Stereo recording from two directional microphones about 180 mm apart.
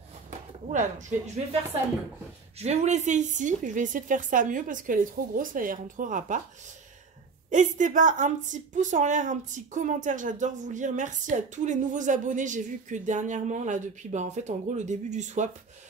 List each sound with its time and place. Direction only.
0.7 s a woman's voice: 45° right (ahead or behind)
7.5 s a woman's voice: 45° right (ahead or behind)